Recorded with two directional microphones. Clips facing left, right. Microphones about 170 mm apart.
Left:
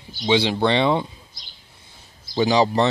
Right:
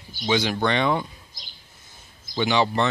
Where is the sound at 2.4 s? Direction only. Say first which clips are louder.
Left 4 dB; 35° left (ahead or behind).